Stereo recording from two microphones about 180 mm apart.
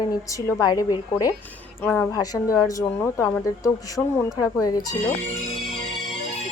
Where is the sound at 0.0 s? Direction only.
20° left (ahead or behind).